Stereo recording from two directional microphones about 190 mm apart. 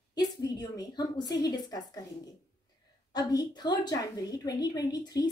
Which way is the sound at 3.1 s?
20° left (ahead or behind).